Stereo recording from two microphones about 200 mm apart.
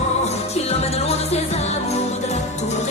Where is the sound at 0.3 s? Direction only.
30° left (ahead or behind).